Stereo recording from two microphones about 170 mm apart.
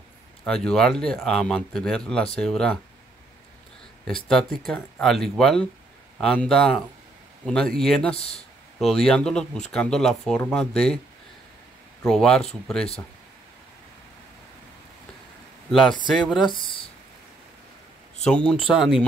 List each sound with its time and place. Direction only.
0.5 s speech: 5° left (ahead or behind)
4.3 s speech: centre (ahead or behind)
12.0 s speech: 5° left (ahead or behind)
16.1 s speech: centre (ahead or behind)
16.4 s a sound: 30° left (ahead or behind)
18.2 s speech: 5° left (ahead or behind)